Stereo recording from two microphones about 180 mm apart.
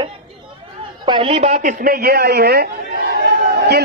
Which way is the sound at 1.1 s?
30° right (ahead or behind).